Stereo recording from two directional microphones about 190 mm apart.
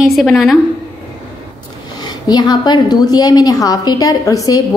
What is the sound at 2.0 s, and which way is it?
A woman's voice, 20° left (ahead or behind).